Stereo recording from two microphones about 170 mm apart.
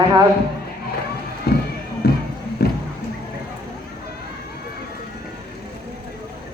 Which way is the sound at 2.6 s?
70° left (ahead or behind).